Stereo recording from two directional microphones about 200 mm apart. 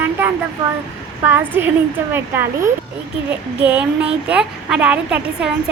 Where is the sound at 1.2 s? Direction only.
10° right (ahead or behind).